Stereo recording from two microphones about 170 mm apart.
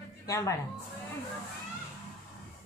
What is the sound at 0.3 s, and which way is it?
Speech, 20° left (ahead or behind).